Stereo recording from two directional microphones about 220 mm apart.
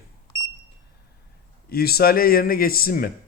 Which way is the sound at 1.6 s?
45° left (ahead or behind).